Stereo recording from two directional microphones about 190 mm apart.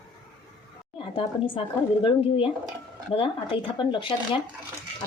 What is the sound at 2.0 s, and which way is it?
Speech, 30° left (ahead or behind).